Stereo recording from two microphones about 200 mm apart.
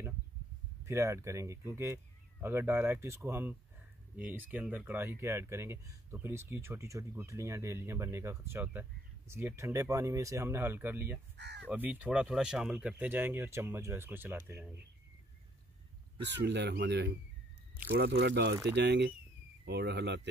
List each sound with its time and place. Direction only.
0.8 s speech: 15° right (ahead or behind)
11.3 s speech: 60° right (ahead or behind)
11.7 s speech: 10° right (ahead or behind)
16.3 s speech: 60° right (ahead or behind)